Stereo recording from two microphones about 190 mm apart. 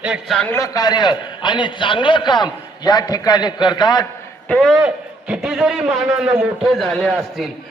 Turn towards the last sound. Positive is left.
turn(degrees=0)  # may be behind; listen again after turning